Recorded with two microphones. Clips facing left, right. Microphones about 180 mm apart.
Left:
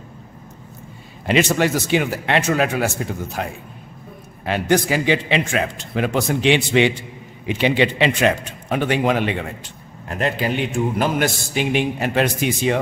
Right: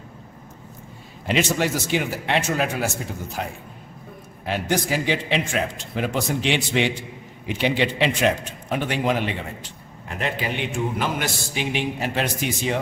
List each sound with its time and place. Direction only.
1.2 s a man's voice: 70° left (ahead or behind)
4.5 s a man's voice: 70° left (ahead or behind)
10.0 s a man's voice: 45° left (ahead or behind); by 12.7 s 60° left (ahead or behind)